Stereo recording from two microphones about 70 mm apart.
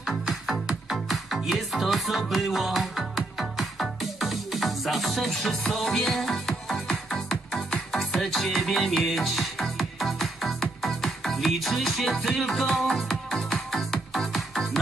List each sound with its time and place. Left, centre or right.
0.2 s music: centre